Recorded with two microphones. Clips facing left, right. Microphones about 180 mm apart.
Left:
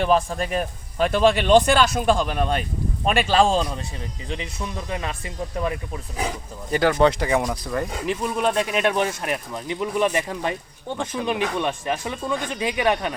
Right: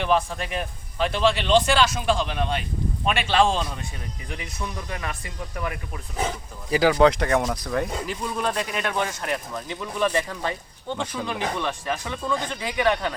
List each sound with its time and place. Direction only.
0.0 s a man's voice: 40° left (ahead or behind)
4.3 s speech: 25° left (ahead or behind)
6.7 s speech: centre (ahead or behind)
8.0 s speech: 20° left (ahead or behind)